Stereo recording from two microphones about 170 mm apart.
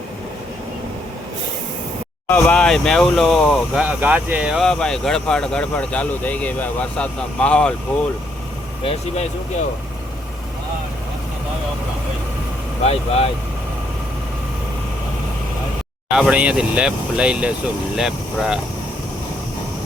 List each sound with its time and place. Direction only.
2.3 s speech: 5° left (ahead or behind)
8.8 s speech: 35° left (ahead or behind)
12.8 s speech: 35° left (ahead or behind)
16.1 s speech: 5° right (ahead or behind)